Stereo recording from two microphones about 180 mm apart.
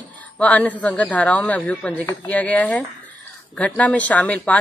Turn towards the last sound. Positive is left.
turn(degrees=10)  # may be behind; listen again after turning